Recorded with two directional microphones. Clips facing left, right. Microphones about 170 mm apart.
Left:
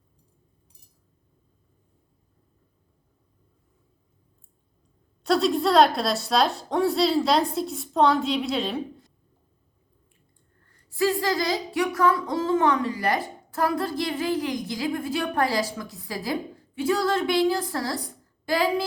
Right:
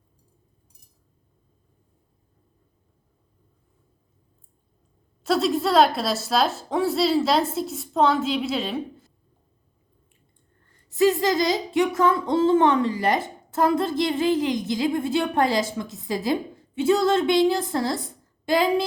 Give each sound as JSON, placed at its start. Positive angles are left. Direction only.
{"t": 5.2, "sound": "a woman's voice", "side_deg": 0}
{"t": 10.7, "sound": "a woman's voice", "side_deg": -20}